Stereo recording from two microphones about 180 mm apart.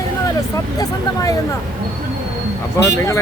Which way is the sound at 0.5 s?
20° left (ahead or behind).